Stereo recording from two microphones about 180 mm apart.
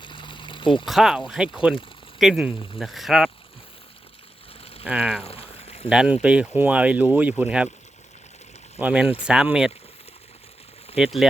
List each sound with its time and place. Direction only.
0.0 s a sound: 25° left (ahead or behind)
0.9 s speech: centre (ahead or behind)
4.8 s speech: 5° right (ahead or behind)
5.2 s a sound: 35° left (ahead or behind)
5.9 s speech: 5° right (ahead or behind)
8.8 s speech: 5° right (ahead or behind)
11.0 s speech: centre (ahead or behind)